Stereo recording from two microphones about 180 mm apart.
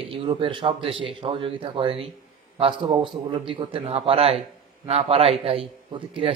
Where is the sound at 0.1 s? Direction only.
30° right (ahead or behind).